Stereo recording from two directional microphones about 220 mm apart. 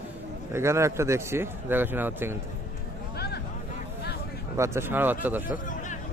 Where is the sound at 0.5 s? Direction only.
10° right (ahead or behind).